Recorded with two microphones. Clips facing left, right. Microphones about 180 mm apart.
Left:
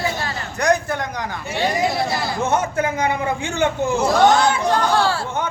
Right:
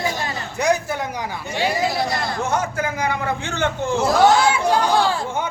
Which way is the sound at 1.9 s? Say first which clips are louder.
Left 1 dB; centre (ahead or behind).